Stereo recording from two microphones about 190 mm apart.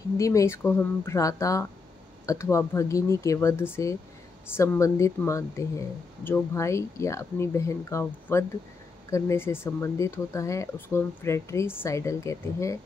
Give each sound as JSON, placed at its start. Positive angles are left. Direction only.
{"t": 0.2, "sound": "speech", "side_deg": 15}